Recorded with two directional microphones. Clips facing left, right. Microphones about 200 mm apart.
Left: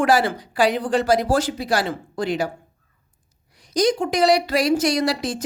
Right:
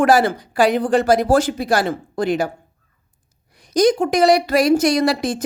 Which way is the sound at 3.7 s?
50° right (ahead or behind).